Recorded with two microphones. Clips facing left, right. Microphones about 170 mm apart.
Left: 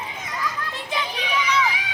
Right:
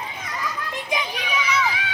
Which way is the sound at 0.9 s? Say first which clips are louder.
Even; 10° right (ahead or behind).